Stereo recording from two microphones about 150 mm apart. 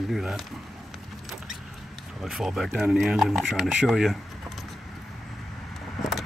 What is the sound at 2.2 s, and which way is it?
Speech, 5° right (ahead or behind).